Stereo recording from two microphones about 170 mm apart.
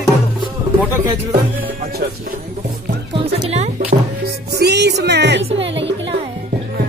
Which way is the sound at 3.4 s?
40° right (ahead or behind).